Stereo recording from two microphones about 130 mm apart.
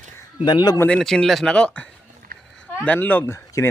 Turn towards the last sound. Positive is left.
turn(degrees=20)  # may be behind; listen again after turning